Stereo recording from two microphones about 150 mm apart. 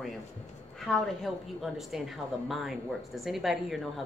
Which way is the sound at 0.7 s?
Centre (ahead or behind).